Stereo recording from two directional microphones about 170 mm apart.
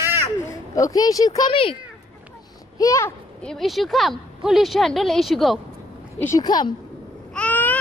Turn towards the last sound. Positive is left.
turn(degrees=10)  # may be behind; listen again after turning